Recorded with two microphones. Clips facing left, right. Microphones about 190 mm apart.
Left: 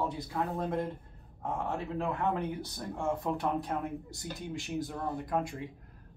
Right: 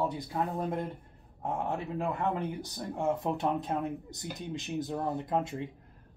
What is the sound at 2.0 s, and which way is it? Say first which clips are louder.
Speech: even; 15° right (ahead or behind).